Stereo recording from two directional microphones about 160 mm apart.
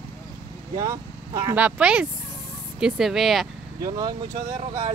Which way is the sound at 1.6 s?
5° right (ahead or behind).